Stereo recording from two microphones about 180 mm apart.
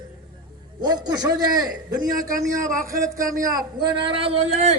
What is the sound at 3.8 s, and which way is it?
Speech, 25° right (ahead or behind).